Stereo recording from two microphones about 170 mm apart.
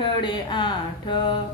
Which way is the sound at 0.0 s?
30° left (ahead or behind).